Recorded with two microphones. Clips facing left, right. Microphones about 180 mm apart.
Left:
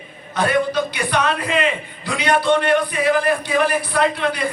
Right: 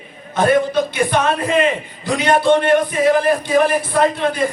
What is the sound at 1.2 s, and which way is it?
A man's voice, 45° right (ahead or behind).